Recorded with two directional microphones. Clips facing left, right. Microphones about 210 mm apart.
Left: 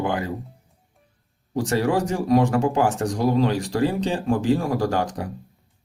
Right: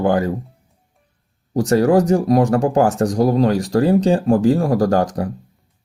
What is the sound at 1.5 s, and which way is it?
Speech, 40° right (ahead or behind).